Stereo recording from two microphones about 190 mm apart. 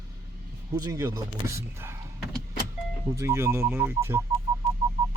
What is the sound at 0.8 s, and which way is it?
Speech, 15° right (ahead or behind).